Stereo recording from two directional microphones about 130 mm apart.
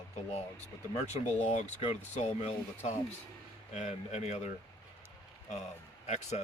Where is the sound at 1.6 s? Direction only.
60° left (ahead or behind).